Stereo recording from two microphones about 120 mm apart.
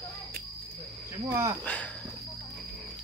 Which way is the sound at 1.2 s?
20° right (ahead or behind).